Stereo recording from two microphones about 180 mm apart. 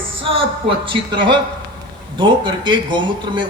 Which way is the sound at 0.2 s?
30° right (ahead or behind).